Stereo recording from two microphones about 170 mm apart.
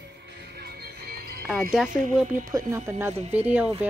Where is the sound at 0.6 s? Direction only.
65° right (ahead or behind).